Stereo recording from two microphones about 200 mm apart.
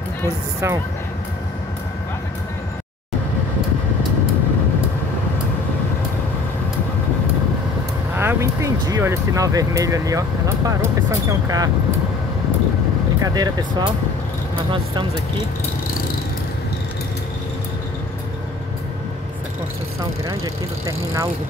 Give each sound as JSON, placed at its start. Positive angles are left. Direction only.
{"t": 8.2, "sound": "speech", "side_deg": -15}
{"t": 13.2, "sound": "speech", "side_deg": -20}
{"t": 20.8, "sound": "speech", "side_deg": -15}